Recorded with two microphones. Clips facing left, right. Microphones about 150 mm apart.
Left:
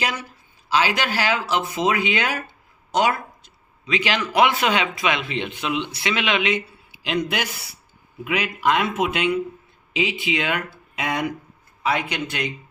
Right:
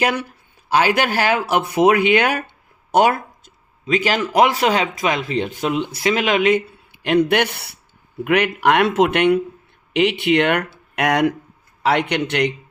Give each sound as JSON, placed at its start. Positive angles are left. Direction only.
{"t": 0.0, "sound": "speech", "side_deg": -60}
{"t": 2.9, "sound": "a sound", "side_deg": -50}
{"t": 4.4, "sound": "speech", "side_deg": -35}